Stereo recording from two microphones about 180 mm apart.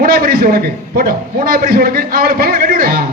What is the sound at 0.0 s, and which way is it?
A man's voice, 55° right (ahead or behind).